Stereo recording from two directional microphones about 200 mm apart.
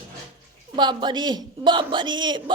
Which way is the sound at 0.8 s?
20° right (ahead or behind).